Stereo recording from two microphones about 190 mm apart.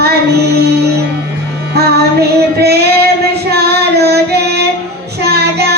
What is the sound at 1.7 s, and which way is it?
Music, 60° right (ahead or behind).